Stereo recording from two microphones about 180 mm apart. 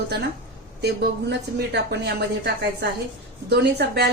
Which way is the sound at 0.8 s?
65° right (ahead or behind).